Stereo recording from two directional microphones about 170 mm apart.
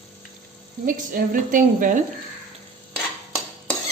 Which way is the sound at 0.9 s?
55° right (ahead or behind).